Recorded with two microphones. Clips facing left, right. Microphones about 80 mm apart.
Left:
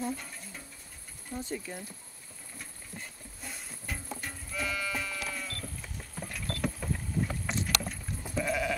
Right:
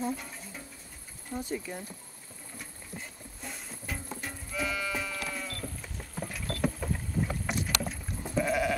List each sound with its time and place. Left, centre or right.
0.0 s music: centre
1.3 s speech: centre
2.6 s music: centre